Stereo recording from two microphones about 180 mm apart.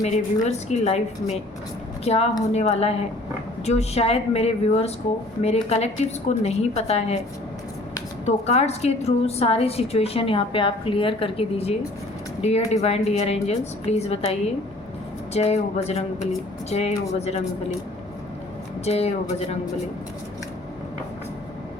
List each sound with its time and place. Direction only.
0.0 s a woman's voice: 40° left (ahead or behind)
8.2 s a woman's voice: 35° left (ahead or behind)
18.9 s a woman's voice: 35° left (ahead or behind)